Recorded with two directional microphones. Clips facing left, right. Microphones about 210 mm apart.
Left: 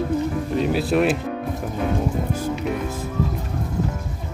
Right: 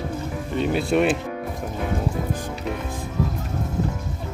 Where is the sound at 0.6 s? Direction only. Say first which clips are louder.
Even; centre (ahead or behind).